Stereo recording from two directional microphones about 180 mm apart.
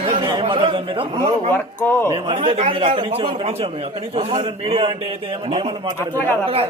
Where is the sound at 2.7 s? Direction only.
25° right (ahead or behind).